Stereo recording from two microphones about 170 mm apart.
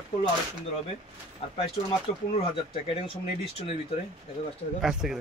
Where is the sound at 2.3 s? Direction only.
35° left (ahead or behind).